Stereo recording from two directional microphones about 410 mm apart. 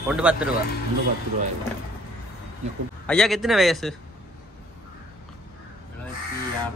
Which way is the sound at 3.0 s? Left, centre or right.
Centre.